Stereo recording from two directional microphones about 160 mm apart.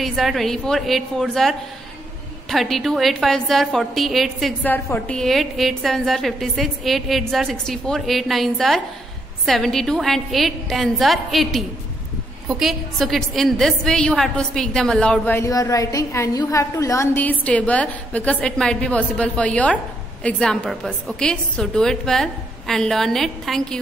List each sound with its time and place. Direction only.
0.0 s a woman's voice: centre (ahead or behind)
4.6 s a woman's voice: 10° left (ahead or behind)